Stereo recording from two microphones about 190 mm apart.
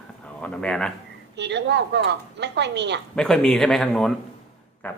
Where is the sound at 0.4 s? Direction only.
5° left (ahead or behind).